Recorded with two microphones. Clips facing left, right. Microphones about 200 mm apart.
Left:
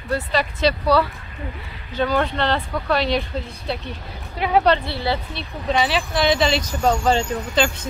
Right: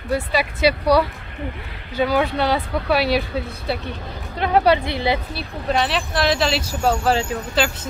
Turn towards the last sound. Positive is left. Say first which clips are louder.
# left 1 dB
turn(degrees=-5)  # may be behind; listen again after turning